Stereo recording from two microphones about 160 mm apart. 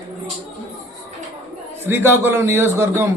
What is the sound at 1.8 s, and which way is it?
A man's voice, 15° right (ahead or behind).